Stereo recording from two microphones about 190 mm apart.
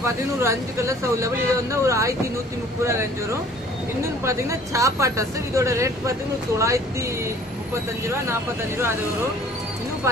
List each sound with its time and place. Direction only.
0.0 s speech: 15° right (ahead or behind)
4.0 s speech: 15° right (ahead or behind)
8.3 s speech: 15° right (ahead or behind)